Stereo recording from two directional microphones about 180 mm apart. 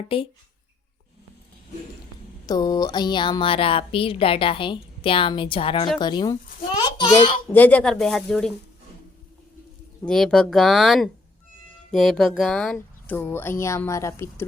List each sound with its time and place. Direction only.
0.1 s speech: 30° left (ahead or behind)
2.5 s speech: 20° left (ahead or behind)
7.5 s speech: 10° left (ahead or behind)
10.1 s speech: 5° left (ahead or behind)